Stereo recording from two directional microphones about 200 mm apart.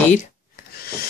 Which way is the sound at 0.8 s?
50° left (ahead or behind).